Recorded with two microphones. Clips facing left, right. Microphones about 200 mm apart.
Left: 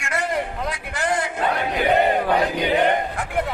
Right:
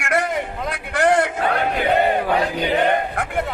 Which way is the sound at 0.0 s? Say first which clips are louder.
Right 3 dB; 60° right (ahead or behind).